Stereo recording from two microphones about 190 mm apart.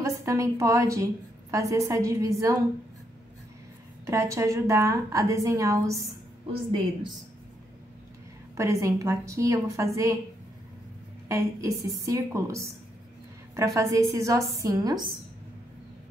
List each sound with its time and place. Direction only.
0.0 s a woman's voice: 15° right (ahead or behind)
4.0 s a woman's voice: 15° right (ahead or behind)
8.5 s a woman's voice: 15° right (ahead or behind)
11.2 s a woman's voice: 15° right (ahead or behind)